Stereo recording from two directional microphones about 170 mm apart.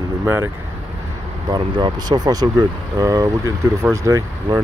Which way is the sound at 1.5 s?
25° right (ahead or behind).